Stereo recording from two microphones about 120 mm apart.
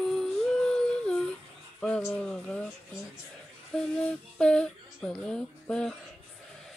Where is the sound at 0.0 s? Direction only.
5° left (ahead or behind).